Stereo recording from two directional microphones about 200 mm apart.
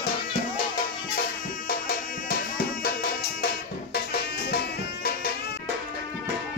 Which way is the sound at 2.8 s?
50° left (ahead or behind).